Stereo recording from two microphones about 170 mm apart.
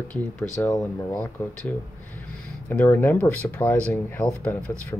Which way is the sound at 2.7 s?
10° left (ahead or behind).